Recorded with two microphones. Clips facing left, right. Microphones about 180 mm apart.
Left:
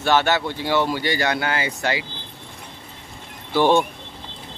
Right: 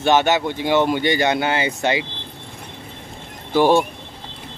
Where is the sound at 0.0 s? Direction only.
20° right (ahead or behind).